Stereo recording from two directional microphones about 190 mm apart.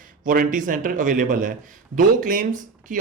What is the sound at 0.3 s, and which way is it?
Speech, 45° right (ahead or behind).